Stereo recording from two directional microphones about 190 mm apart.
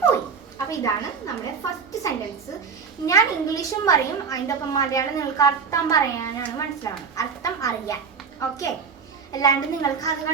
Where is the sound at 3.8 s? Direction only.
20° left (ahead or behind).